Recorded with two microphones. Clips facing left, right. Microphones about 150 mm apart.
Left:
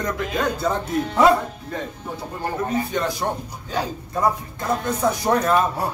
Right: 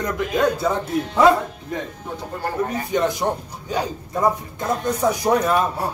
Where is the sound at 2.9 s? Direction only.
15° right (ahead or behind).